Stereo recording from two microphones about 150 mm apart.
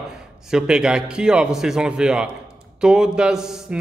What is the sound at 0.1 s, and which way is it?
A man's voice, 5° right (ahead or behind).